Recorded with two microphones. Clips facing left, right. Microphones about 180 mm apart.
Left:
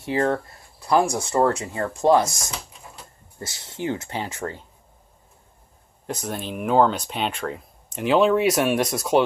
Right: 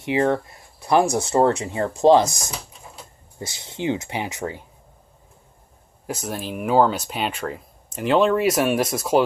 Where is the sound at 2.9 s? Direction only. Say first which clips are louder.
Right 2 dB; 15° right (ahead or behind).